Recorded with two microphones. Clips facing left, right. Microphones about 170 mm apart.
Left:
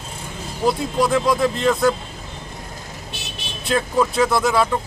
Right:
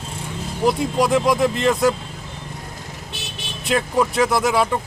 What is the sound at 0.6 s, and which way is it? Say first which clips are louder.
A man's voice: right 1 dB; 15° right (ahead or behind).